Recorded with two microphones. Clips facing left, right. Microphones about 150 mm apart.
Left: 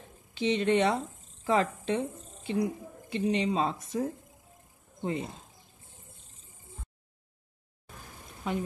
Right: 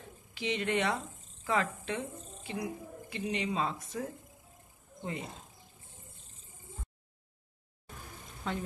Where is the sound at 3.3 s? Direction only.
30° left (ahead or behind).